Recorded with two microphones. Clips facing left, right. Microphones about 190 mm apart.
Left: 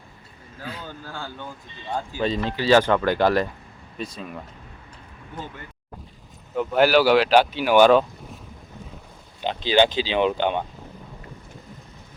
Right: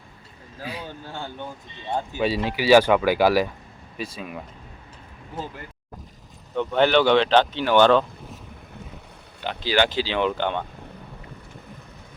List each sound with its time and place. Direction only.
0.6 s a sound: 15° right (ahead or behind)
0.9 s speech: 25° right (ahead or behind)
2.2 s speech: 10° right (ahead or behind)
6.5 s speech: 5° left (ahead or behind)
9.4 s speech: 20° left (ahead or behind)